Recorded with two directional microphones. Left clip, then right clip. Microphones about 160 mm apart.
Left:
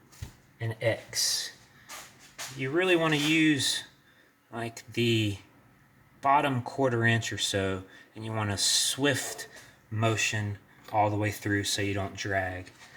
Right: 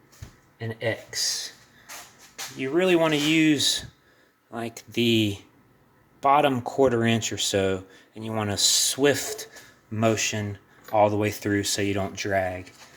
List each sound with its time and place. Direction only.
0.6 s speech: 15° right (ahead or behind)
2.6 s speech: 50° right (ahead or behind); by 9.5 s 35° right (ahead or behind)
9.9 s speech: 45° right (ahead or behind)